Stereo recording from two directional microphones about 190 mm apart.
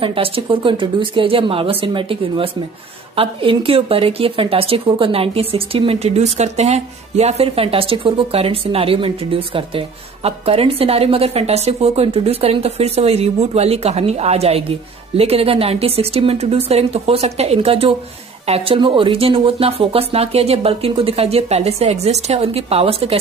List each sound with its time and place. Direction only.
0.0 s a woman's voice: 30° right (ahead or behind)